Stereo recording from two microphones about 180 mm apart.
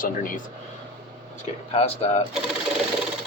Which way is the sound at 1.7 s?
35° left (ahead or behind).